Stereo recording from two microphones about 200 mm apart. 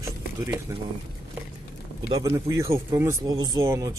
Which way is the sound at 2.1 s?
20° right (ahead or behind).